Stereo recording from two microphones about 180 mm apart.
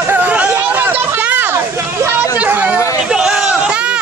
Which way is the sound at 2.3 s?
10° right (ahead or behind).